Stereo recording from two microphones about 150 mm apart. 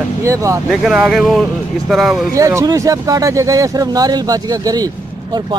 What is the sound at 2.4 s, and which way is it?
Speech, 20° right (ahead or behind).